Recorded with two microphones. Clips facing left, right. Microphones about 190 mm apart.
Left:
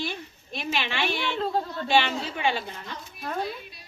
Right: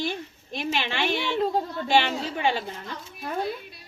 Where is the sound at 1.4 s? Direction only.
15° right (ahead or behind).